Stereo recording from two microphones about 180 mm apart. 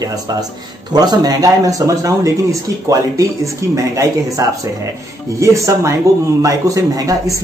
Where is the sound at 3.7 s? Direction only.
15° right (ahead or behind).